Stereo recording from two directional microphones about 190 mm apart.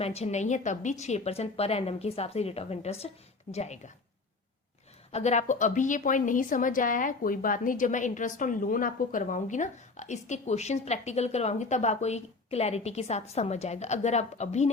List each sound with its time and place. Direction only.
0.0 s a woman's voice: 35° left (ahead or behind)
5.1 s a woman's voice: 35° left (ahead or behind)